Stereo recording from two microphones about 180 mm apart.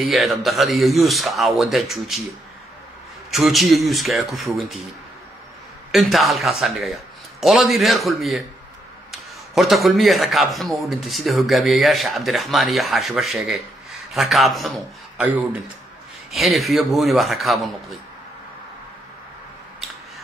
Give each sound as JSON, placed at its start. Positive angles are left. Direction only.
{"t": 0.0, "sound": "a man's voice", "side_deg": 0}
{"t": 3.3, "sound": "a man's voice", "side_deg": 0}
{"t": 5.9, "sound": "a man's voice", "side_deg": 0}